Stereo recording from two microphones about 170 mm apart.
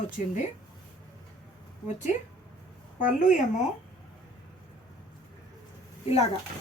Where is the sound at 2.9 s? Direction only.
50° left (ahead or behind).